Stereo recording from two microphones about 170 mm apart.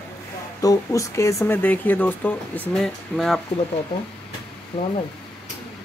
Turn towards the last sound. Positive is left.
turn(degrees=35)  # may be behind; listen again after turning